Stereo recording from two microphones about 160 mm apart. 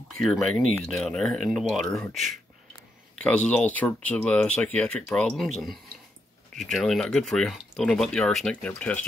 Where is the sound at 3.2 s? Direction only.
5° left (ahead or behind).